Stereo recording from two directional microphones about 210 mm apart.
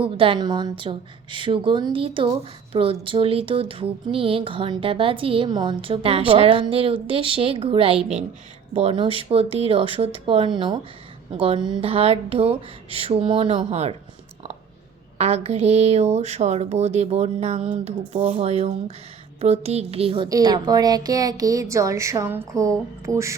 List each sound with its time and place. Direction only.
0.0 s a woman's voice: 25° right (ahead or behind)
15.2 s a woman's voice: 30° right (ahead or behind); by 23.3 s 15° right (ahead or behind)